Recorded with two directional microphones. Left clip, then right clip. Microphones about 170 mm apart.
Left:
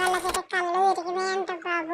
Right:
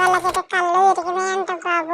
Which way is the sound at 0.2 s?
Centre (ahead or behind).